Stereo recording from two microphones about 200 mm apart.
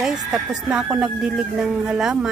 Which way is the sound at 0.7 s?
5° right (ahead or behind).